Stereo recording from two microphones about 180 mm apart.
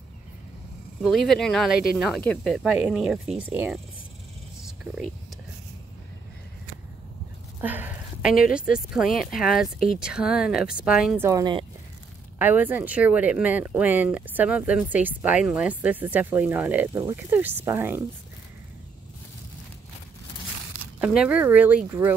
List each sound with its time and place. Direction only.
1.0 s speech: centre (ahead or behind)
7.6 s a sound: 10° right (ahead or behind)
8.5 s speech: 5° right (ahead or behind)
11.2 s speech: 20° right (ahead or behind)
12.4 s speech: 10° right (ahead or behind)
21.0 s speech: 5° right (ahead or behind)